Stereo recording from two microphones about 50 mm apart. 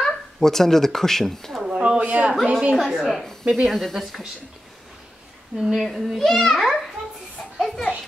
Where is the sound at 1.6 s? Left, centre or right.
Right.